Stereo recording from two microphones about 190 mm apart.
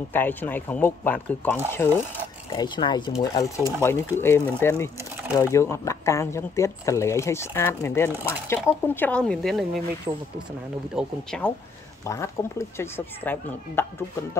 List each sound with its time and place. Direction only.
0.1 s speech: 10° left (ahead or behind)
2.5 s speech: 25° left (ahead or behind); by 9.7 s centre (ahead or behind)
10.1 s speech: 20° right (ahead or behind)
11.0 s speech: 5° left (ahead or behind)
12.0 s speech: 15° left (ahead or behind)